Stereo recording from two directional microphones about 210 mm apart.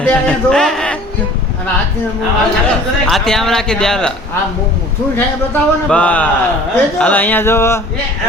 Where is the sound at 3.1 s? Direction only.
Centre (ahead or behind).